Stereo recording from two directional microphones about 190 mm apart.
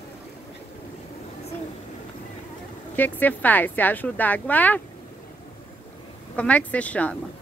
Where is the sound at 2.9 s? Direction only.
10° left (ahead or behind).